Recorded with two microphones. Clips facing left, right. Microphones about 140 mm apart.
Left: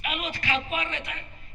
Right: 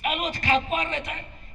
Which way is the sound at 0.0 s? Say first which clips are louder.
Right 5 dB; 40° right (ahead or behind).